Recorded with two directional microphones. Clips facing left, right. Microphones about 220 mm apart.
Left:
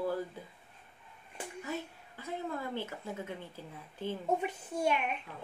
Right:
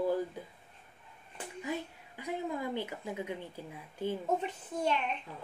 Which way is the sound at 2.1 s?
15° right (ahead or behind).